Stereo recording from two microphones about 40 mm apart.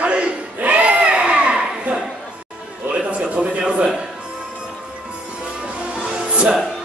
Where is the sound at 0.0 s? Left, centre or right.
Right.